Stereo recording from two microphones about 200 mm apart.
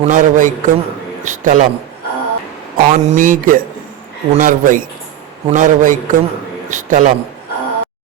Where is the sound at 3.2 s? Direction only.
40° right (ahead or behind).